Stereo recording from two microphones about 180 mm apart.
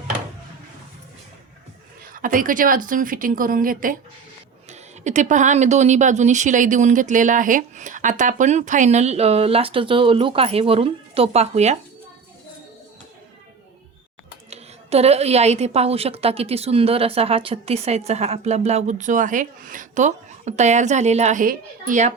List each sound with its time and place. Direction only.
2.1 s a woman's voice: 50° right (ahead or behind)
14.5 s a woman's voice: 35° right (ahead or behind)